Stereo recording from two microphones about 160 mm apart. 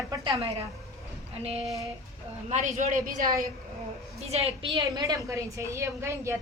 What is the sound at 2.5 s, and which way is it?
Speech, 50° right (ahead or behind).